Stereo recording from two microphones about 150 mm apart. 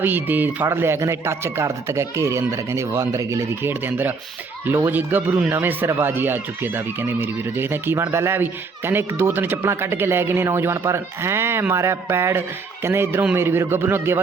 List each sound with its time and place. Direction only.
0.0 s speech: 10° right (ahead or behind)